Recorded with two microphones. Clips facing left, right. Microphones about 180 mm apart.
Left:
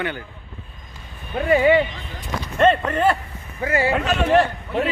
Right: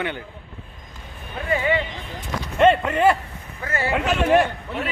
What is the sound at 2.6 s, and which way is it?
Speech, 10° right (ahead or behind).